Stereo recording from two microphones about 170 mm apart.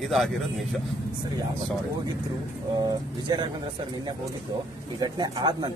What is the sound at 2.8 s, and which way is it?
Speech, 25° right (ahead or behind).